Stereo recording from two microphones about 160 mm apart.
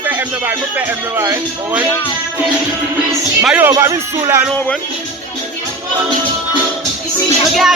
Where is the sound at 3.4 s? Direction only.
10° right (ahead or behind).